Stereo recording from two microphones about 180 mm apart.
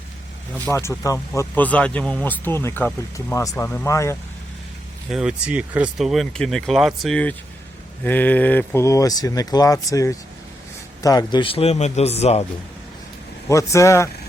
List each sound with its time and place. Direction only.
0.6 s speech: 15° left (ahead or behind)
5.0 s speech: 5° right (ahead or behind); by 12.5 s 35° left (ahead or behind)
13.5 s speech: 15° left (ahead or behind)